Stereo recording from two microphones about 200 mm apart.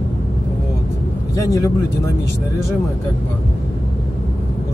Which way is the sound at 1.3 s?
15° left (ahead or behind).